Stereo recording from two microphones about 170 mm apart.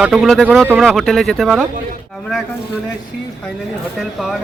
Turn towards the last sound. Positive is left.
turn(degrees=0)  # may be behind; listen again after turning